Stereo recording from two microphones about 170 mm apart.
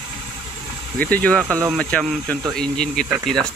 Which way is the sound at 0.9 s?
10° left (ahead or behind).